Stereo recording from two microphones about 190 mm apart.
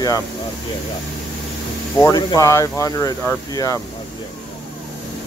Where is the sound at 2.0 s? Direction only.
20° left (ahead or behind).